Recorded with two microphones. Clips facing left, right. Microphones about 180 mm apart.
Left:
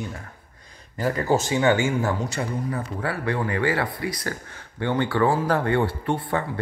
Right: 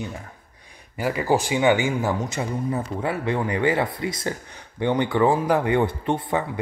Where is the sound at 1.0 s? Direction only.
10° right (ahead or behind).